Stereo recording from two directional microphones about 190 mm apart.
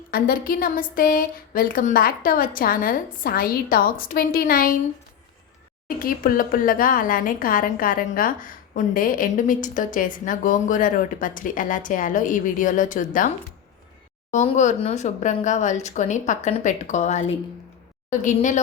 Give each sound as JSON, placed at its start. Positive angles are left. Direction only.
{"t": 0.1, "sound": "a woman's voice", "side_deg": 50}
{"t": 6.0, "sound": "a woman's voice", "side_deg": 50}